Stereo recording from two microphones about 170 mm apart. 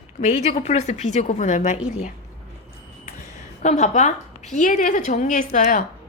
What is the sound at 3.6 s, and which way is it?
A woman's voice, 45° left (ahead or behind).